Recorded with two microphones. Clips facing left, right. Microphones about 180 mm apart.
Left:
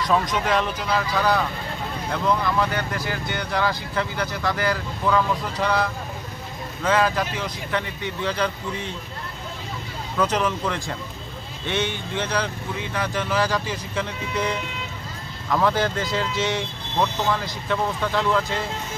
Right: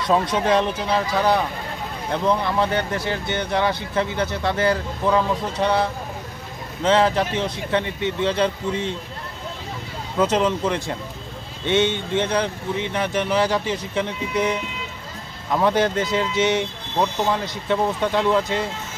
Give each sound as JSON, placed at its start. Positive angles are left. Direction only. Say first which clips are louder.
{"t": 0.0, "sound": "speech", "louder": "right 2 dB", "side_deg": -30}
{"t": 10.1, "sound": "speech", "louder": "right 3 dB", "side_deg": -20}
{"t": 15.5, "sound": "speech", "louder": "right 3 dB", "side_deg": -20}